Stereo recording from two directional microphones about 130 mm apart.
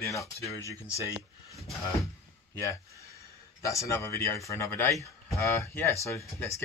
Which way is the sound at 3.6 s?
25° left (ahead or behind).